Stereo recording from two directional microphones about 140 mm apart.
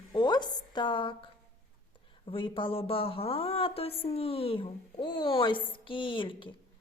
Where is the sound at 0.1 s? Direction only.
30° left (ahead or behind).